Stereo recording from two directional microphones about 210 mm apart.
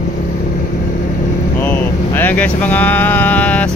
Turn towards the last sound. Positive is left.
turn(degrees=5)  # may be behind; listen again after turning